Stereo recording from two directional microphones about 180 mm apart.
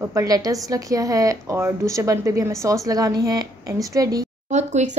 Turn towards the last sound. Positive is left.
turn(degrees=-40)  # may be behind; listen again after turning